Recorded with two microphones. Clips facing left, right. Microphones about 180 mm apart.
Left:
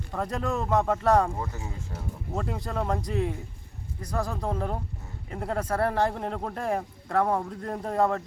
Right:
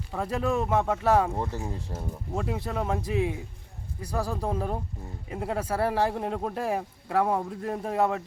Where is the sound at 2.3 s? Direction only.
5° right (ahead or behind).